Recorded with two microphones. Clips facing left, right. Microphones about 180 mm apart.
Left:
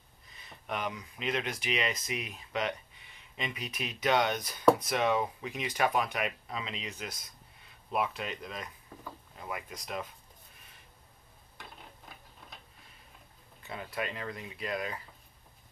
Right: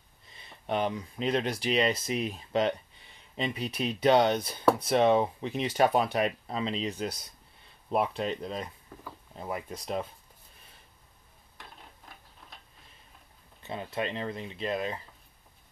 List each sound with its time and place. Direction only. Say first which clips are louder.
0.4 s speech: right 7 dB; 30° right (ahead or behind)
13.6 s speech: right 4 dB; 25° right (ahead or behind)